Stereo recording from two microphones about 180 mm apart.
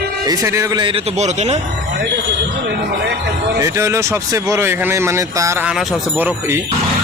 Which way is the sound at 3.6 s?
15° right (ahead or behind).